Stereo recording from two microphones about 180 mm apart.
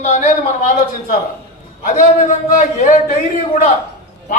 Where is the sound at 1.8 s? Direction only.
45° left (ahead or behind).